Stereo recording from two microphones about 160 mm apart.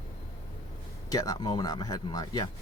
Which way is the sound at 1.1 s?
20° left (ahead or behind).